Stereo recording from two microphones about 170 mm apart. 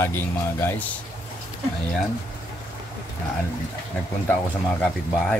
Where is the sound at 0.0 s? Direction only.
15° left (ahead or behind).